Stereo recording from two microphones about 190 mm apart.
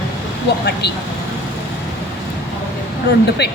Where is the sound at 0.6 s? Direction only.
60° left (ahead or behind).